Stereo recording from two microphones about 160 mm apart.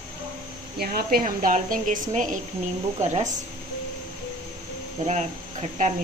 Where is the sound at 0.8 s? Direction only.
70° right (ahead or behind); by 3.3 s 50° right (ahead or behind).